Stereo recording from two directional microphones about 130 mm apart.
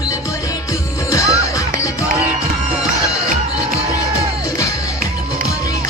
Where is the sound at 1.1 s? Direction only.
25° left (ahead or behind).